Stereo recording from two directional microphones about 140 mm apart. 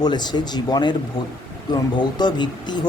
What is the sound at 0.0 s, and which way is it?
Speech, 30° left (ahead or behind).